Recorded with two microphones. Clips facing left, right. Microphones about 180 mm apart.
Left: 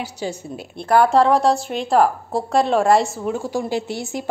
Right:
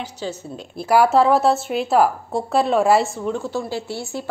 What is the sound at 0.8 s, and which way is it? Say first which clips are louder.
A woman's voice: even; 10° right (ahead or behind).